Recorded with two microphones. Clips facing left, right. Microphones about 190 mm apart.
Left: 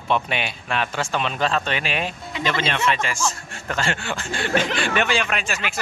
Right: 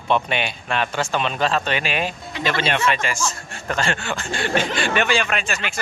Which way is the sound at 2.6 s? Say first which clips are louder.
Right 3 dB; 50° right (ahead or behind).